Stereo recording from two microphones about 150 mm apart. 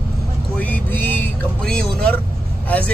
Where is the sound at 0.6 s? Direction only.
10° left (ahead or behind).